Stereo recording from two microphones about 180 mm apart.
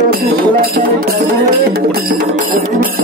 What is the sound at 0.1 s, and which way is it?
Music, 55° right (ahead or behind).